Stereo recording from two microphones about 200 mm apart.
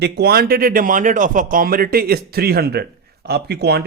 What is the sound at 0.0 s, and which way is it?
Speech, 50° right (ahead or behind).